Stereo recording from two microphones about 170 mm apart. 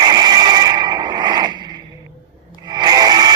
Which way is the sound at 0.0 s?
25° right (ahead or behind).